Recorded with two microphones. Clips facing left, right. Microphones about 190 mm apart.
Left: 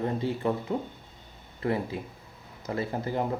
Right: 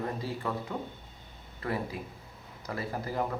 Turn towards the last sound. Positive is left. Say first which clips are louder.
# left 3 dB
turn(degrees=25)  # may be behind; listen again after turning